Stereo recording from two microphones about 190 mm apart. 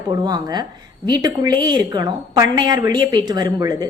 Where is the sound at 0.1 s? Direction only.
20° right (ahead or behind).